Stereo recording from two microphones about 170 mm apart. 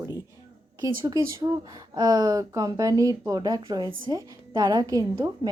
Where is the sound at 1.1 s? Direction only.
20° right (ahead or behind).